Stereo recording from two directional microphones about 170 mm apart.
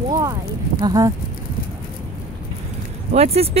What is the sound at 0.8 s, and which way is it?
Speech, 20° right (ahead or behind).